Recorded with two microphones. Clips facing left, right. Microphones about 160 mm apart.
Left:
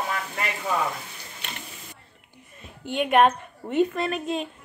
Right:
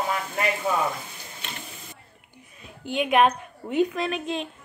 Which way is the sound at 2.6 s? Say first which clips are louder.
Even; centre (ahead or behind).